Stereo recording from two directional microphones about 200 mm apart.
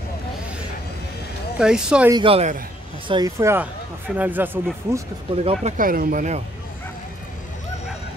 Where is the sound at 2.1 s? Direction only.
30° right (ahead or behind); by 4.5 s 10° right (ahead or behind).